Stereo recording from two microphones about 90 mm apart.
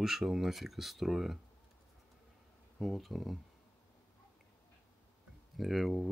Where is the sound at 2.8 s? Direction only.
Centre (ahead or behind).